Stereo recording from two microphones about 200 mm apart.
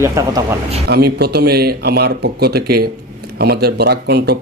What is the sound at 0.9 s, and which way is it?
Speech, 50° right (ahead or behind).